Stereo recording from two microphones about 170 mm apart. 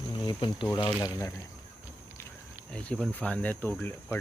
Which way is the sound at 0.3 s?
30° left (ahead or behind).